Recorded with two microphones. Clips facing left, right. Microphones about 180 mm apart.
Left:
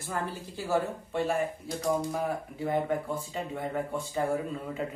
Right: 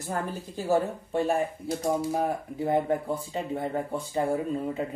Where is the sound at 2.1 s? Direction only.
35° right (ahead or behind).